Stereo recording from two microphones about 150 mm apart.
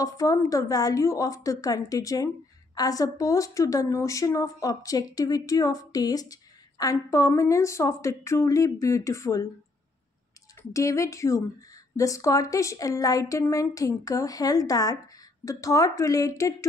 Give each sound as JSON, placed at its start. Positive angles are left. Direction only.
{"t": 0.0, "sound": "a woman's voice", "side_deg": 25}
{"t": 10.7, "sound": "a woman's voice", "side_deg": 20}